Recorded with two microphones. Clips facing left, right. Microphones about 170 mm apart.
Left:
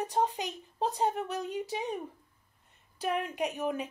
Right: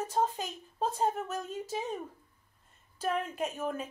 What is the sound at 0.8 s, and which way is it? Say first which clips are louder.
A woman's voice: left 1 dB; 15° left (ahead or behind).